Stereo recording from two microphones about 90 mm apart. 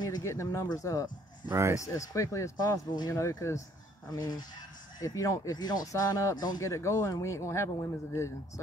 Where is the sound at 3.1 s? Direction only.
35° left (ahead or behind).